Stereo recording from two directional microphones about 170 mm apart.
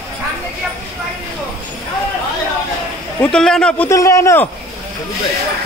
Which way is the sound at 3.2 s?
5° left (ahead or behind).